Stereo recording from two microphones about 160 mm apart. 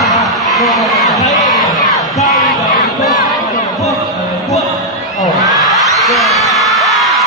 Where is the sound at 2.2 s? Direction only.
60° left (ahead or behind).